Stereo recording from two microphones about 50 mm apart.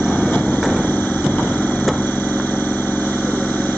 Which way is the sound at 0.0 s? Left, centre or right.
Left.